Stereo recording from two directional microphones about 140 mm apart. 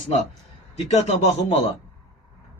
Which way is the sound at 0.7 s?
50° left (ahead or behind).